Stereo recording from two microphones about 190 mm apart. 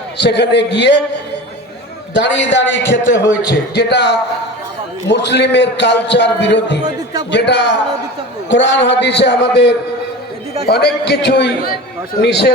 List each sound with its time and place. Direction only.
0.2 s a man's voice: 65° left (ahead or behind)
2.1 s a man's voice: 70° left (ahead or behind)